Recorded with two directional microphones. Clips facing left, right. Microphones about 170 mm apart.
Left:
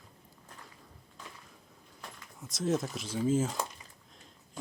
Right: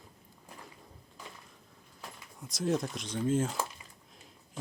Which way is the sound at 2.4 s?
Centre (ahead or behind).